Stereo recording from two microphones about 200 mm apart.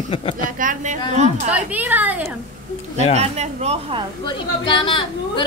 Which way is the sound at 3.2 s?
35° right (ahead or behind).